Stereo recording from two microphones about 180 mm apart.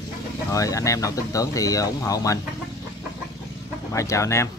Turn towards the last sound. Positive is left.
turn(degrees=15)  # may be behind; listen again after turning